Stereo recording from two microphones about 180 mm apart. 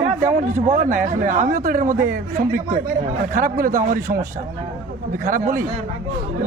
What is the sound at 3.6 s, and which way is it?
Speech, 50° right (ahead or behind).